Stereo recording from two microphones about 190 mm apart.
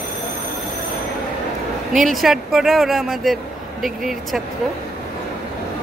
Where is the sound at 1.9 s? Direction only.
Centre (ahead or behind).